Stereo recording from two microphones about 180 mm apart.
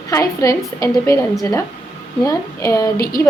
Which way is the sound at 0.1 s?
20° left (ahead or behind).